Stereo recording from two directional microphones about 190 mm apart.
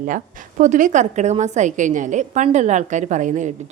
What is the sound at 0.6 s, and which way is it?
A woman's voice, 40° right (ahead or behind).